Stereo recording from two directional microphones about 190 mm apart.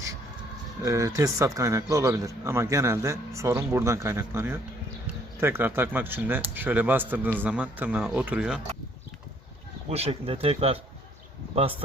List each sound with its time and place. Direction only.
0.8 s speech: 15° right (ahead or behind)
9.9 s speech: 35° right (ahead or behind)